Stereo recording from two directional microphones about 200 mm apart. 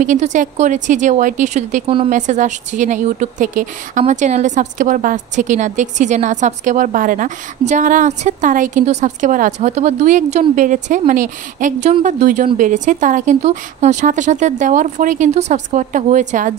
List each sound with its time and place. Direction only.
0.0 s a woman's voice: 35° right (ahead or behind)